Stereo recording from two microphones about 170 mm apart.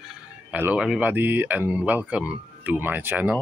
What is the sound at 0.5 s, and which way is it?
Speech, 10° right (ahead or behind).